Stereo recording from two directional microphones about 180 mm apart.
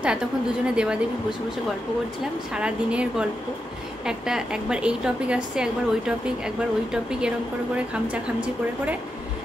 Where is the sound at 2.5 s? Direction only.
5° right (ahead or behind).